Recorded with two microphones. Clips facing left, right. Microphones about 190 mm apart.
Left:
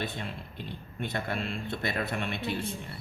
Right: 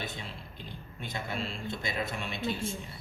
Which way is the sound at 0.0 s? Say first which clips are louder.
Left 4 dB; 60° left (ahead or behind).